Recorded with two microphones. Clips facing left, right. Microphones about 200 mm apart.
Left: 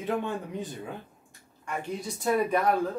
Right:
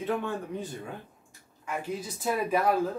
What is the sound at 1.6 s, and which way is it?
Speech, 5° right (ahead or behind).